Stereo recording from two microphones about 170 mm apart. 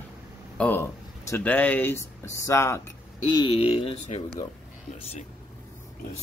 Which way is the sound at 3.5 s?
35° left (ahead or behind).